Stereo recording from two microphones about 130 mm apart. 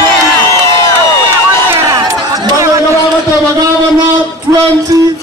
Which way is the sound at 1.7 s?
25° right (ahead or behind).